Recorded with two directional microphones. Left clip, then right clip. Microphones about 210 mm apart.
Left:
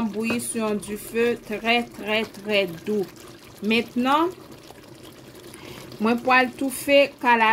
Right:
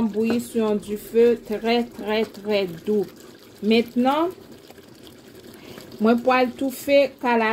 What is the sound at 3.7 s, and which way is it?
Speech, 10° left (ahead or behind).